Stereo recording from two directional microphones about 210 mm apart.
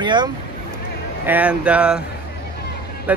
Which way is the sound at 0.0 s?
20° right (ahead or behind).